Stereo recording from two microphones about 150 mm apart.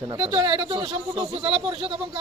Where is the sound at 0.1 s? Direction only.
30° right (ahead or behind).